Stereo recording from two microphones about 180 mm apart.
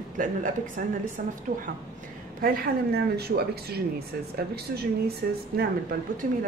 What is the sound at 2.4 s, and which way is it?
A woman's voice, 60° right (ahead or behind).